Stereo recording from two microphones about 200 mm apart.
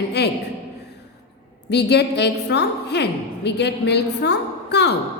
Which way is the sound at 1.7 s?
55° left (ahead or behind).